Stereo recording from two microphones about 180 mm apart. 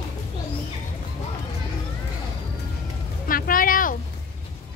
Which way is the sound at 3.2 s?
50° left (ahead or behind).